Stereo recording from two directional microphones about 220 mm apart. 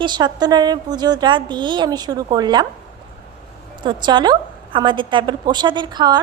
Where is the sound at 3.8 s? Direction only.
20° right (ahead or behind).